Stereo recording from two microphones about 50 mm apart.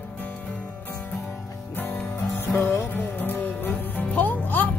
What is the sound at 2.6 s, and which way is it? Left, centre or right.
Music, left.